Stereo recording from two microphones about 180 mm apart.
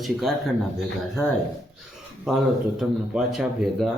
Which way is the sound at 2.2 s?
5° right (ahead or behind).